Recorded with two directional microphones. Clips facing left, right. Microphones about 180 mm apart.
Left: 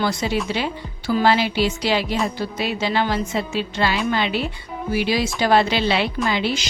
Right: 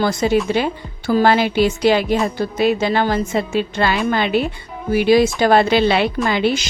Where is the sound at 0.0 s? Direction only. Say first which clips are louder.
Right 6 dB; 50° right (ahead or behind).